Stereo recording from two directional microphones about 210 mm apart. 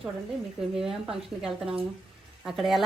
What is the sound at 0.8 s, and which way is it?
A woman's voice, centre (ahead or behind).